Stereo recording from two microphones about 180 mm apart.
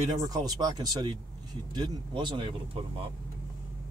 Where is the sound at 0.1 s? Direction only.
20° right (ahead or behind).